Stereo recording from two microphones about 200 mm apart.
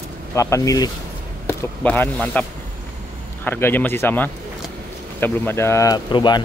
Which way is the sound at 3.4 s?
10° left (ahead or behind).